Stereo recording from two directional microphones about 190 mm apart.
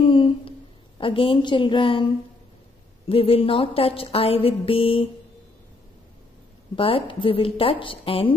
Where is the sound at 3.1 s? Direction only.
30° left (ahead or behind).